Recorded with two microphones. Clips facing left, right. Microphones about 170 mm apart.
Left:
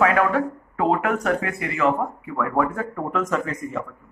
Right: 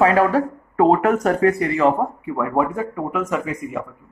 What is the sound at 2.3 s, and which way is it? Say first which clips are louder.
Speech: right 2 dB; 20° right (ahead or behind).